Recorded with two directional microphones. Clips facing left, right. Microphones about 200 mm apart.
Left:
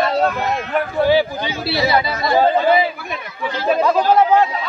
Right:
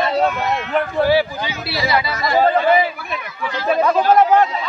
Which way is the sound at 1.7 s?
30° left (ahead or behind).